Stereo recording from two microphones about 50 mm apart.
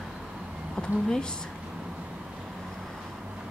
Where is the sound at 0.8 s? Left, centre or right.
Centre.